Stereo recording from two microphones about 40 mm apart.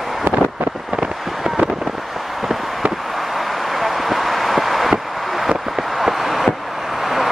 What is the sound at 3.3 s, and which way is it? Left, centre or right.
Vehicle, centre.